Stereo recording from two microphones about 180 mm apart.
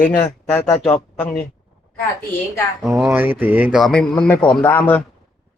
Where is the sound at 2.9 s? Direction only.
10° right (ahead or behind); by 5.0 s 10° left (ahead or behind).